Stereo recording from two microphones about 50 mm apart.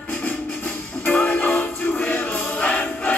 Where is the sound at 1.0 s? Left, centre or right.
Left.